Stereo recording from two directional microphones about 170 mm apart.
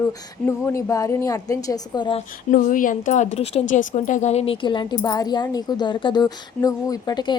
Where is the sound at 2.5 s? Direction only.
50° left (ahead or behind); by 7.3 s 25° left (ahead or behind).